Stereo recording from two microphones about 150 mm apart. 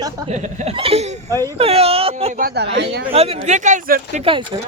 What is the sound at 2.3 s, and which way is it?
Speech, 85° right.